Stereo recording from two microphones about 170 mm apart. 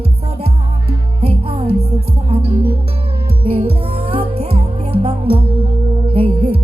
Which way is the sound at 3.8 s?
35° right (ahead or behind).